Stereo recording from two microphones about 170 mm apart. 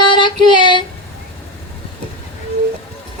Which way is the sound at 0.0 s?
25° left (ahead or behind).